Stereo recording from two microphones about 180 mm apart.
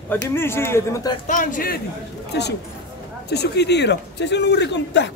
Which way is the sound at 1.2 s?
45° left (ahead or behind).